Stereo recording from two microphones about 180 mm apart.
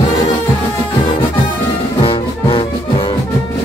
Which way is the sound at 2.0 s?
30° left (ahead or behind).